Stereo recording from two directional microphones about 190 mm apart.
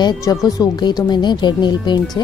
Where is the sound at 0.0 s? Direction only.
20° left (ahead or behind).